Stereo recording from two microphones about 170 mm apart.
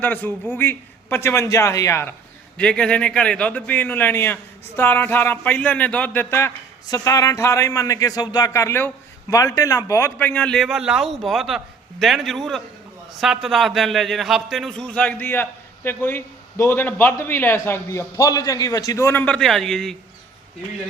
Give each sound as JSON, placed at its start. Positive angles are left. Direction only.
{"t": 0.0, "sound": "a man's voice", "side_deg": 10}